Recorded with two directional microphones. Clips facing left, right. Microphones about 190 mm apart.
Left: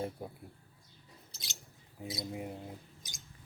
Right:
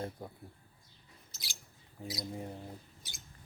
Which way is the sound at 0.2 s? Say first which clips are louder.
Left 2 dB; 10° left (ahead or behind).